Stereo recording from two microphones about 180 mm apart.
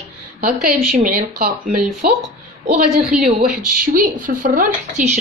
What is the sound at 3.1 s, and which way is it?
Speech, 5° right (ahead or behind).